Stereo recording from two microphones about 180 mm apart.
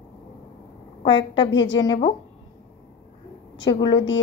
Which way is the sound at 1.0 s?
25° left (ahead or behind).